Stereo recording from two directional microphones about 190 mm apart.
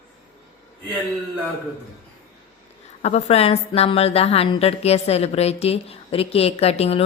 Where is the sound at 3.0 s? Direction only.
35° left (ahead or behind).